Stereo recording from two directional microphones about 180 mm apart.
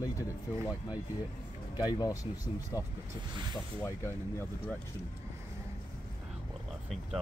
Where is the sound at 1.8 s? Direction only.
20° left (ahead or behind).